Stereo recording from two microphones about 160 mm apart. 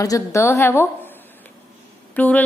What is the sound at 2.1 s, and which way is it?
Speech, 10° left (ahead or behind).